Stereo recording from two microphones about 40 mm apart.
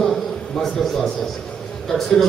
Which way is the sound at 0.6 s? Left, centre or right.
Centre.